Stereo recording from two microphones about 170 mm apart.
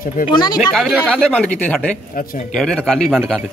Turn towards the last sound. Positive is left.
turn(degrees=0)  # may be behind; listen again after turning